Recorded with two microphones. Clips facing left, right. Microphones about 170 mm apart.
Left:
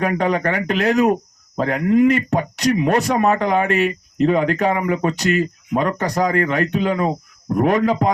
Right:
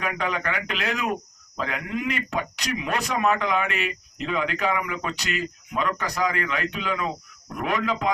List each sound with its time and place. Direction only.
0.0 s speech: 40° left (ahead or behind)